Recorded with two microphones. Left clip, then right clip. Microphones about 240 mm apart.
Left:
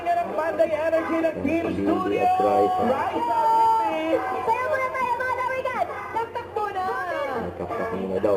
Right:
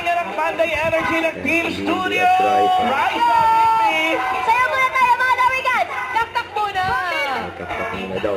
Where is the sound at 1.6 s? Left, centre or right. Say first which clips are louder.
Right 3 dB; centre.